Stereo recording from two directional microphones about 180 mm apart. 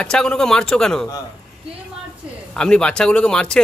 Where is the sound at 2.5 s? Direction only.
5° left (ahead or behind).